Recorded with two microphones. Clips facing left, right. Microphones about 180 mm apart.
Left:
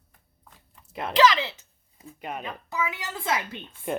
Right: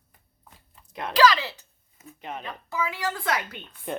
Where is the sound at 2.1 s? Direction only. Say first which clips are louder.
Left 2 dB; 10° left (ahead or behind).